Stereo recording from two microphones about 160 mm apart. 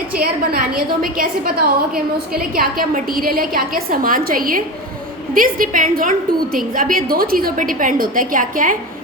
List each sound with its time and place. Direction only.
0.1 s a woman's voice: 70° right (ahead or behind)